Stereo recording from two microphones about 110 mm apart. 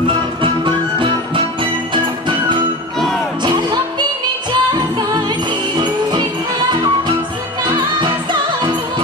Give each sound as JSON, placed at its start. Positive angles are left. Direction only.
{"t": 0.4, "sound": "music", "side_deg": -50}
{"t": 3.4, "sound": "music", "side_deg": -45}
{"t": 7.6, "sound": "music", "side_deg": -45}